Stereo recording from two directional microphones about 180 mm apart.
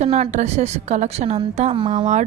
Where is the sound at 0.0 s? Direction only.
35° right (ahead or behind).